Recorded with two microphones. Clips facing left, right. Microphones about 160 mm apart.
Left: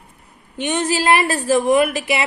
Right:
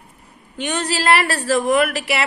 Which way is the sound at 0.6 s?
15° left (ahead or behind).